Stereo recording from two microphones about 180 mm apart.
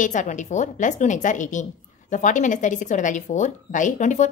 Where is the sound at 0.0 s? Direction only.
45° left (ahead or behind).